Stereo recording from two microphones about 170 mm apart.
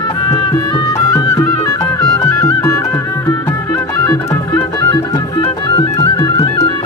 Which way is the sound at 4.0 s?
25° left (ahead or behind).